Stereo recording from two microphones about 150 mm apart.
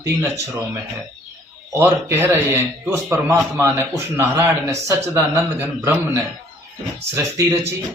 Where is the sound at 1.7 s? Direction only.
15° right (ahead or behind).